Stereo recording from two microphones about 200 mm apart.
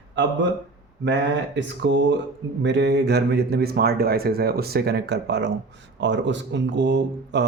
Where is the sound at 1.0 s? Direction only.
60° right (ahead or behind).